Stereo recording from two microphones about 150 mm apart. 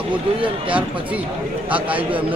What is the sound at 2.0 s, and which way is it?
Speech, 35° right (ahead or behind).